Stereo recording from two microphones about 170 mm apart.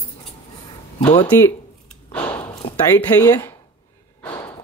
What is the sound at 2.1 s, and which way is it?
Speech, 25° left (ahead or behind).